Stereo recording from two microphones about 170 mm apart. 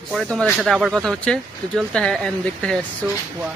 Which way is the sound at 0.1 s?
5° left (ahead or behind).